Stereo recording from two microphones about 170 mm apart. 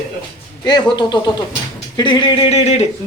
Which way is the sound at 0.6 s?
25° left (ahead or behind).